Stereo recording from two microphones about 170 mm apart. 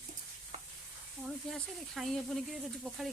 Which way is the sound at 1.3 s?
Centre (ahead or behind).